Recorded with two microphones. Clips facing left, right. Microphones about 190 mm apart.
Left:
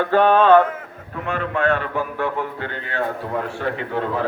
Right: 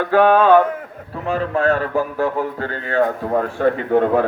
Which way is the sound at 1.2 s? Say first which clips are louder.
Right 3 dB; 35° right (ahead or behind).